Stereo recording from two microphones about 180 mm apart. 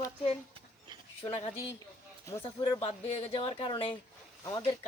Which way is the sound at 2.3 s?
20° left (ahead or behind).